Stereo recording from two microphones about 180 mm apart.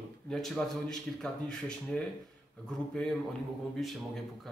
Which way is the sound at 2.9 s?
5° left (ahead or behind).